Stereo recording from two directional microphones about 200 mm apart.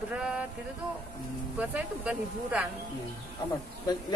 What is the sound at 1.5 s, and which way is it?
Speech, 5° right (ahead or behind).